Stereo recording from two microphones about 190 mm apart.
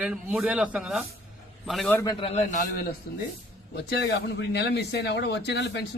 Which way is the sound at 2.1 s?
30° left (ahead or behind).